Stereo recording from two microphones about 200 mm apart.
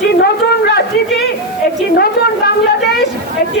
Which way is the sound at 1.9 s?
50° left (ahead or behind).